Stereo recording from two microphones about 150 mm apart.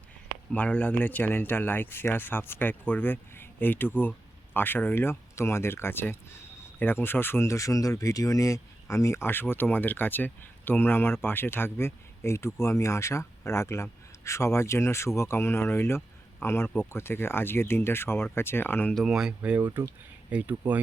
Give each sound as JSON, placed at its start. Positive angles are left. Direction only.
{"t": 0.5, "sound": "speech", "side_deg": 10}
{"t": 19.0, "sound": "speech", "side_deg": -5}